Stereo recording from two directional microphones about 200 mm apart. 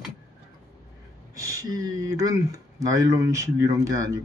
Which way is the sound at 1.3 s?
15° right (ahead or behind).